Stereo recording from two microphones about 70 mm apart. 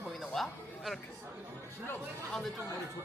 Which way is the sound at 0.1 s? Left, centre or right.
Centre.